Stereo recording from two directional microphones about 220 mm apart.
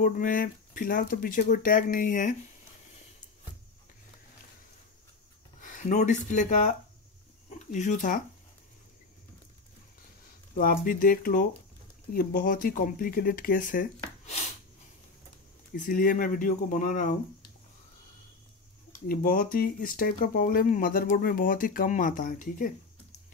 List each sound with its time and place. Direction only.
0.0 s speech: 40° left (ahead or behind)
5.6 s speech: 35° left (ahead or behind)
10.5 s speech: 40° left (ahead or behind)
15.7 s speech: 40° left (ahead or behind)
18.9 s speech: 40° left (ahead or behind)